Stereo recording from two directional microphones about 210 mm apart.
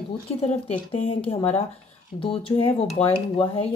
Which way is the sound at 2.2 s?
25° left (ahead or behind).